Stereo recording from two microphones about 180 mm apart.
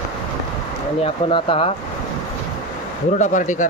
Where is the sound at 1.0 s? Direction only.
30° left (ahead or behind).